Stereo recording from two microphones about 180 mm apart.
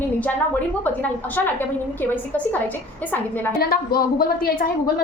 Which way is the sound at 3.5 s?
60° left (ahead or behind).